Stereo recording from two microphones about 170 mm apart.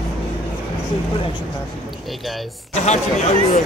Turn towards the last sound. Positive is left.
turn(degrees=45)  # may be behind; listen again after turning